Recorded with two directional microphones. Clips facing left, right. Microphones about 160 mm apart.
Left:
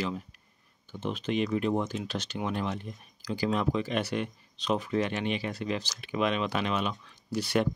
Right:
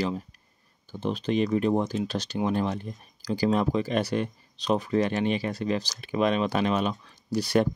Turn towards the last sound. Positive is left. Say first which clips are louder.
# right 4 dB
turn(degrees=-40)  # may be behind; listen again after turning